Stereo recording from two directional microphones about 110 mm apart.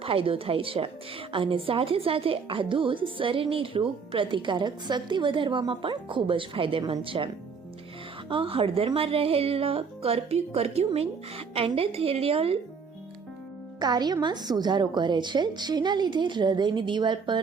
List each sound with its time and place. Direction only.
0.0 s speech: 60° right (ahead or behind)
8.3 s speech: 55° right (ahead or behind)
13.7 s speech: 40° right (ahead or behind)